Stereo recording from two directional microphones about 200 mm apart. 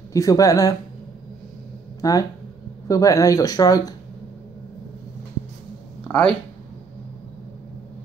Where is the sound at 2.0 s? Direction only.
15° left (ahead or behind).